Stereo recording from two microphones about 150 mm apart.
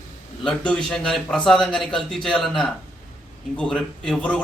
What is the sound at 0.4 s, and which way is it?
A man's voice, 5° left (ahead or behind).